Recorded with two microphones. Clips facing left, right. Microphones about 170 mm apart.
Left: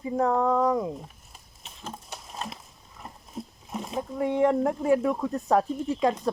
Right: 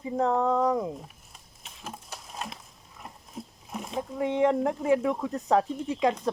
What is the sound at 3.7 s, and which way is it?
Speech, centre (ahead or behind).